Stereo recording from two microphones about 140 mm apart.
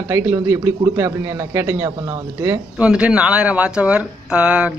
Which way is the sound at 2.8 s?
10° right (ahead or behind).